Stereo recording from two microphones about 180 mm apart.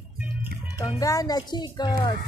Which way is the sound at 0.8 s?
20° left (ahead or behind).